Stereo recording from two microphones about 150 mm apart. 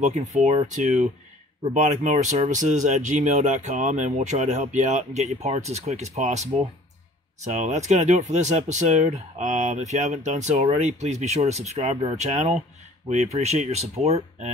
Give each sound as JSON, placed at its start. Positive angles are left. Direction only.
{"t": 0.0, "sound": "speech", "side_deg": -50}